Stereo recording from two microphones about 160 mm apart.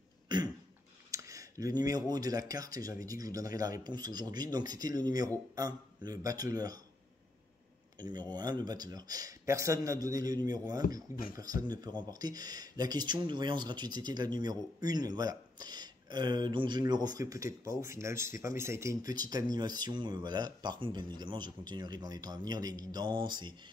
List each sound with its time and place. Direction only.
1.1 s speech: 20° right (ahead or behind)
8.0 s speech: 25° right (ahead or behind)
10.8 s speech: 65° left (ahead or behind)
11.6 s speech: 25° right (ahead or behind)